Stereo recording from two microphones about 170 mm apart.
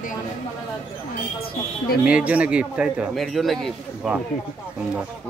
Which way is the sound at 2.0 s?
10° right (ahead or behind).